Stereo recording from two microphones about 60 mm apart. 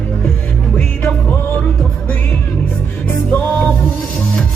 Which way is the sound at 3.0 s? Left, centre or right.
Left.